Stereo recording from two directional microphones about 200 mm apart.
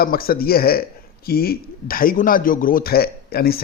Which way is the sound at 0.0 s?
50° left (ahead or behind).